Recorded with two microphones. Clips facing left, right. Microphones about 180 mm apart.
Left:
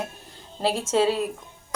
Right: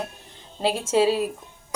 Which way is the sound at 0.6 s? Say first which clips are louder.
Right 1 dB; centre (ahead or behind).